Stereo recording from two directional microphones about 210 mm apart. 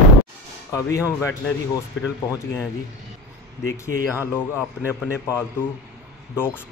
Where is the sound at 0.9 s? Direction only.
15° left (ahead or behind).